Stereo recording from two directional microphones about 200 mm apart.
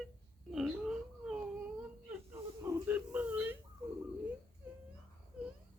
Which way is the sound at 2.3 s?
10° right (ahead or behind).